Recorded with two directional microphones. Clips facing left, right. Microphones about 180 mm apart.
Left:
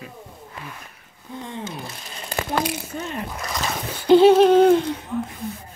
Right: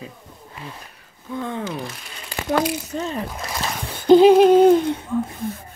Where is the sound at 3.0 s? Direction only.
35° right (ahead or behind).